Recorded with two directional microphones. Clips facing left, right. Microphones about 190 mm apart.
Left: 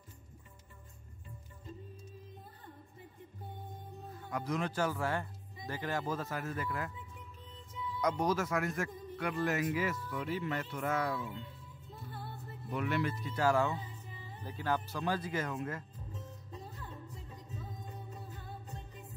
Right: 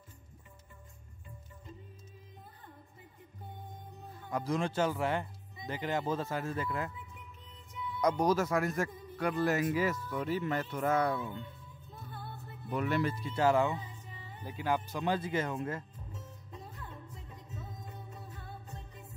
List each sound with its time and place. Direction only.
4.3 s speech: 30° right (ahead or behind)
8.0 s speech: 35° right (ahead or behind)
12.7 s speech: 40° right (ahead or behind)
16.1 s music: 35° left (ahead or behind)